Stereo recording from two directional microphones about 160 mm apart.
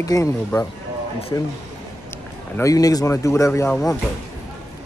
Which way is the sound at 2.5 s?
20° left (ahead or behind).